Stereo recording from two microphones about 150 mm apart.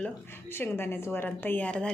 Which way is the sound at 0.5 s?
15° left (ahead or behind).